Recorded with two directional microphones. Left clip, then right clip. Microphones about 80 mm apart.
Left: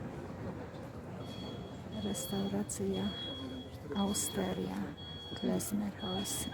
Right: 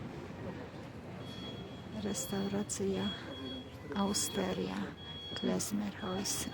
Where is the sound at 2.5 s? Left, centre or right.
Centre.